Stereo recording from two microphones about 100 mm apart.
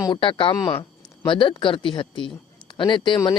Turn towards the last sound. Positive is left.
turn(degrees=50)  # may be behind; listen again after turning